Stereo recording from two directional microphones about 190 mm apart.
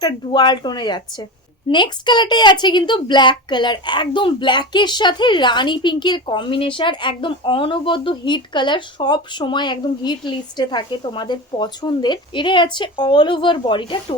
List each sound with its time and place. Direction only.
0.0 s a woman's voice: 25° left (ahead or behind)